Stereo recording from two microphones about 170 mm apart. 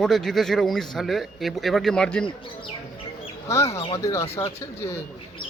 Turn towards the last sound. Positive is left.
turn(degrees=15)  # may be behind; listen again after turning